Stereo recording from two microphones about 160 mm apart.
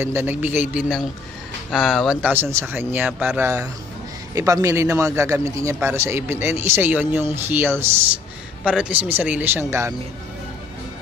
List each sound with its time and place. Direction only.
0.0 s a man's voice: 15° right (ahead or behind)
1.7 s speech: centre (ahead or behind)
2.3 s a man's voice: 15° right (ahead or behind)